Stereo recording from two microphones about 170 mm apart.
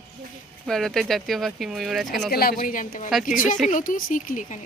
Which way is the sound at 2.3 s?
65° left (ahead or behind).